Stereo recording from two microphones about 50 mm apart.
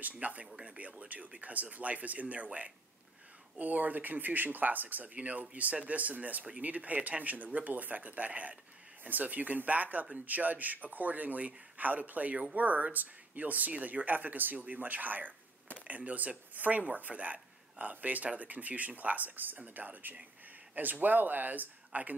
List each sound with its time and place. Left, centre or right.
0.2 s speech: right
0.5 s speech: centre; by 22.1 s right